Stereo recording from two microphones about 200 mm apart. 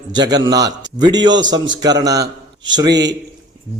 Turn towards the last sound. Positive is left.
turn(degrees=-20)  # may be behind; listen again after turning